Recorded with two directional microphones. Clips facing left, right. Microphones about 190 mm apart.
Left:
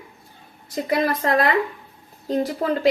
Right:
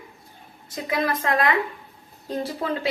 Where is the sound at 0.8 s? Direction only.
35° left (ahead or behind).